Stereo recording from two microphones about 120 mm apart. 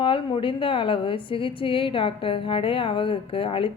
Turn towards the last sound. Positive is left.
turn(degrees=50)  # may be behind; listen again after turning